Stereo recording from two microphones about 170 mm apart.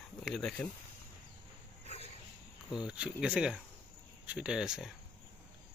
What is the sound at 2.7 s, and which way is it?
Speech, 5° right (ahead or behind).